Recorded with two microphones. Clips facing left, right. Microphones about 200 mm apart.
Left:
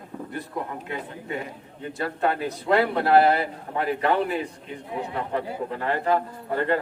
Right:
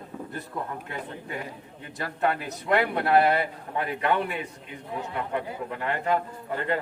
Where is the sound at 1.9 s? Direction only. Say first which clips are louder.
Left 2 dB; 30° left (ahead or behind).